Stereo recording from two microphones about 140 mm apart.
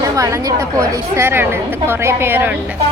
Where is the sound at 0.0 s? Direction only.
25° right (ahead or behind).